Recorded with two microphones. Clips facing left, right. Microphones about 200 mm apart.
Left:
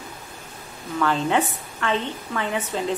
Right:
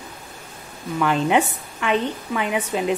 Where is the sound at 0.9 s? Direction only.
15° right (ahead or behind).